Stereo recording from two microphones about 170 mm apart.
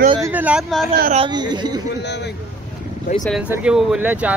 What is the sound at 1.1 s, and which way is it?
Speech, 30° right (ahead or behind).